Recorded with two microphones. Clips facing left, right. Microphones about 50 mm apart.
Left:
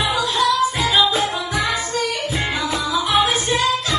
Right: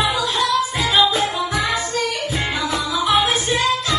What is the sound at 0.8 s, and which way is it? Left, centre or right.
Music, centre.